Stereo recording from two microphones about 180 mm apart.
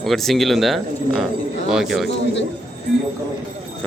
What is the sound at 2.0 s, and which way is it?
Speech, 80° left.